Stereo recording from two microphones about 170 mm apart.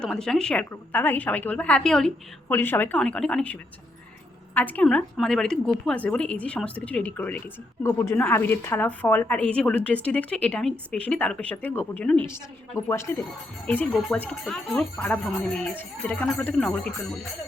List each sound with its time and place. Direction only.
0.0 s a woman's voice: 5° left (ahead or behind)